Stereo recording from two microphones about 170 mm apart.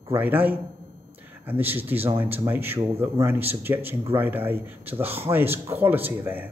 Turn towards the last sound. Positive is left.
turn(degrees=-10)  # may be behind; listen again after turning